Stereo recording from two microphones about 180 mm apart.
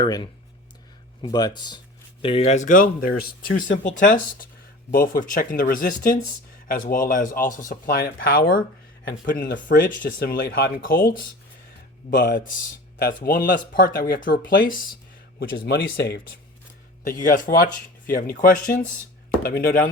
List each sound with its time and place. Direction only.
0.0 s speech: 25° left (ahead or behind)
2.2 s speech: 35° left (ahead or behind); by 11.1 s 55° left (ahead or behind)
13.0 s speech: 55° left (ahead or behind)
15.4 s speech: 60° left (ahead or behind)
17.0 s speech: 50° left (ahead or behind)